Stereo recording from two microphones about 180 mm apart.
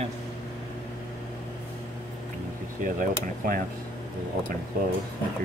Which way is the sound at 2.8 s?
50° right (ahead or behind).